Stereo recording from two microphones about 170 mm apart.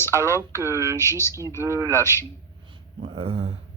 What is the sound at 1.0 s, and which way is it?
Speech, 15° left (ahead or behind).